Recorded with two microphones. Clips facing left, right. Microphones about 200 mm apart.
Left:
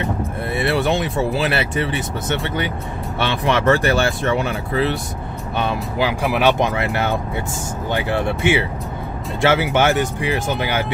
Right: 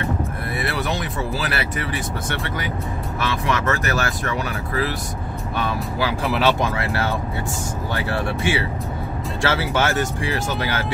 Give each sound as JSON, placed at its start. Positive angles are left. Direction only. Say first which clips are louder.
{"t": 0.6, "sound": "speech", "louder": "left 7 dB", "side_deg": 25}